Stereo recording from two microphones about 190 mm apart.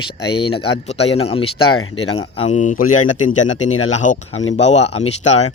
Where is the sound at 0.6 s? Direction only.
35° left (ahead or behind).